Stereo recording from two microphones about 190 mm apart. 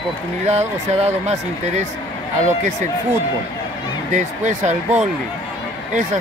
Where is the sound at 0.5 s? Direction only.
35° right (ahead or behind).